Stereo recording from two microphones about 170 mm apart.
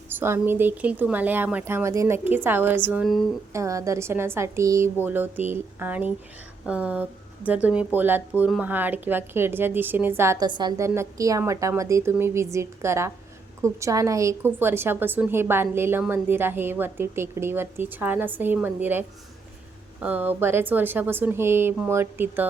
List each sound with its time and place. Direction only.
0.1 s a woman's voice: 10° right (ahead or behind)
10.4 s a woman's voice: 25° right (ahead or behind)